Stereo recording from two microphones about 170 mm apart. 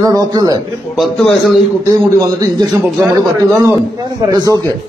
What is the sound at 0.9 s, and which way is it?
Speech, centre (ahead or behind).